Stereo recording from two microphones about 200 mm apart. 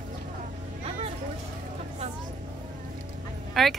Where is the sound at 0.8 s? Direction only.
30° right (ahead or behind).